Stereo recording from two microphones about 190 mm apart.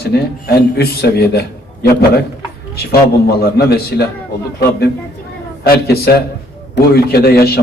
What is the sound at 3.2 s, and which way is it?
Speech, 55° left (ahead or behind).